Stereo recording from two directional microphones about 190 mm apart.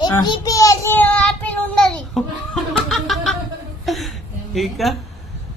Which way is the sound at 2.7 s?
Centre (ahead or behind).